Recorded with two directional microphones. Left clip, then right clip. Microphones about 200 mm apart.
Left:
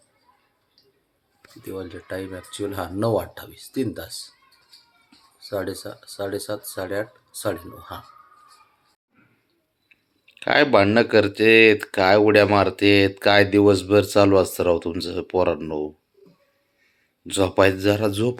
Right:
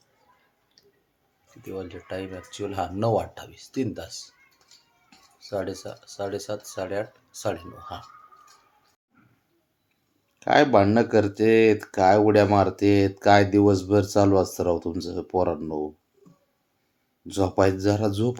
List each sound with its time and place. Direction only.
1.6 s speech: 15° left (ahead or behind)
5.4 s speech: 15° left (ahead or behind)
10.4 s speech: 5° right (ahead or behind)
17.2 s speech: centre (ahead or behind)